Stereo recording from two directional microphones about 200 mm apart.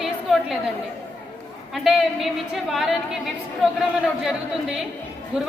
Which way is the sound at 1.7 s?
Centre (ahead or behind).